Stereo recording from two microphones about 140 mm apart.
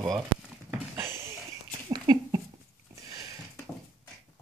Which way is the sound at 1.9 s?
25° right (ahead or behind).